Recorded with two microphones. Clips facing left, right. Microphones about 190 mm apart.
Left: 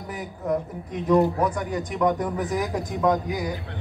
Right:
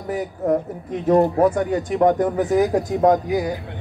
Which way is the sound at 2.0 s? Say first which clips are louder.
Right 6 dB; 55° right (ahead or behind).